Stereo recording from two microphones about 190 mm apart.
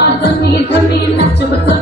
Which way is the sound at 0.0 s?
60° left (ahead or behind).